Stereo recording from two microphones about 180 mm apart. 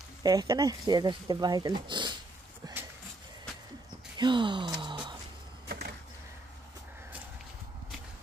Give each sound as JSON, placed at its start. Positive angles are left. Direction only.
{"t": 0.2, "sound": "speech", "side_deg": -20}
{"t": 2.6, "sound": "a sound", "side_deg": -20}
{"t": 4.2, "sound": "gasp", "side_deg": -25}